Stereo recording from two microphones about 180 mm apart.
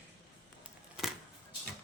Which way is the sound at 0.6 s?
Centre (ahead or behind).